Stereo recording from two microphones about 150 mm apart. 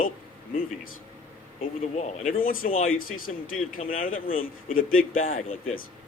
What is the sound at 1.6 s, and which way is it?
Speech, 45° left (ahead or behind).